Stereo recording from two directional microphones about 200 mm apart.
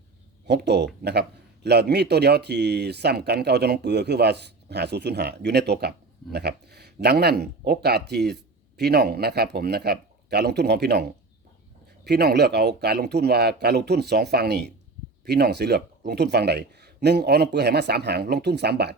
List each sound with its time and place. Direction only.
0.4 s speech: 55° right (ahead or behind)
12.0 s speech: 55° right (ahead or behind)